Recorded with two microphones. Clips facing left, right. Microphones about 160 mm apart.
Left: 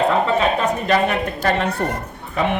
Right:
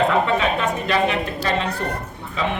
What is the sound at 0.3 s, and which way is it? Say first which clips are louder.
A woman's voice: left 3 dB; 40° left (ahead or behind).